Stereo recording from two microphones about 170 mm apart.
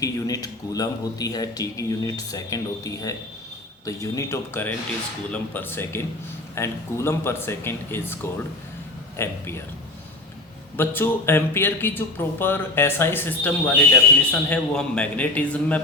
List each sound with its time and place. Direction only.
0.0 s speech: 20° left (ahead or behind)
10.8 s speech: 10° left (ahead or behind)